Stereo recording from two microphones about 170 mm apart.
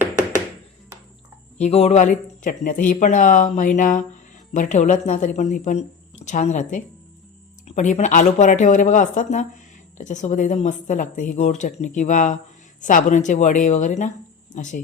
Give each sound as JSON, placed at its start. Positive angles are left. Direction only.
{"t": 1.5, "sound": "speech", "side_deg": 40}